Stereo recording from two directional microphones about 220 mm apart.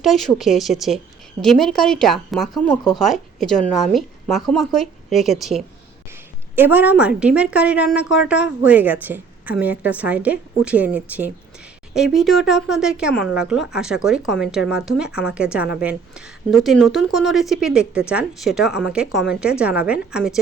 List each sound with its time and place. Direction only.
0.0 s a woman's voice: centre (ahead or behind)